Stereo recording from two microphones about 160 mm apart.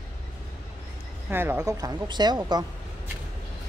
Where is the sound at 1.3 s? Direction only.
15° right (ahead or behind).